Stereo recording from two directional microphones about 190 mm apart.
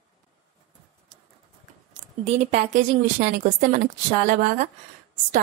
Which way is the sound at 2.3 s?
35° right (ahead or behind).